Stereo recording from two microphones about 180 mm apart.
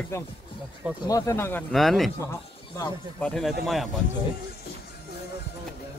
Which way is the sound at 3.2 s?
5° left (ahead or behind).